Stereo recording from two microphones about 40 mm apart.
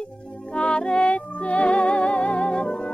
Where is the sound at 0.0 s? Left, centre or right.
Left.